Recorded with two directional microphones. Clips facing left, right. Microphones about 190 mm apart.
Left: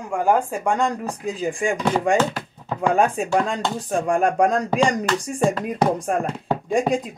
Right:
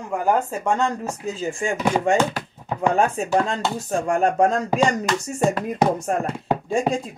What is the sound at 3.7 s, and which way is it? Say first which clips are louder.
Speech: left 1 dB; 15° left (ahead or behind).